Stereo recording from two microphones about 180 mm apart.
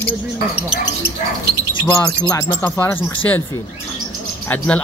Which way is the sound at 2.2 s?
15° left (ahead or behind).